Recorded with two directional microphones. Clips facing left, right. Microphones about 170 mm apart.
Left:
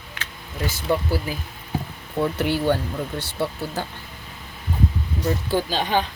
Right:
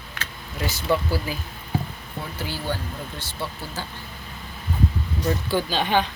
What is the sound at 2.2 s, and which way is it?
Speech, 70° left (ahead or behind).